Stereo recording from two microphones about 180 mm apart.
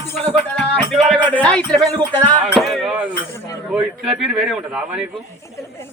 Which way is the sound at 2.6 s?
Centre (ahead or behind).